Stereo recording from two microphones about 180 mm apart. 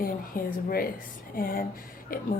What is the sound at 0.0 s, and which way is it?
A woman's voice, 55° left (ahead or behind).